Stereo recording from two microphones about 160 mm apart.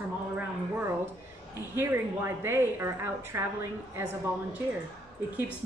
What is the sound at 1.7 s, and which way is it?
A woman's voice, 15° right (ahead or behind).